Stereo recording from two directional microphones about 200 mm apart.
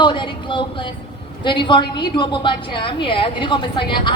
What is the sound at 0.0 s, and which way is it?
Speech, 25° left (ahead or behind).